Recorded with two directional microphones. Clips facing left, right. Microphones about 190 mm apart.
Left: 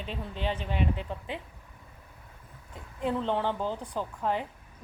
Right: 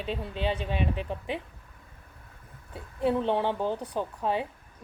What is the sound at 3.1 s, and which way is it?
A woman's voice, 15° right (ahead or behind).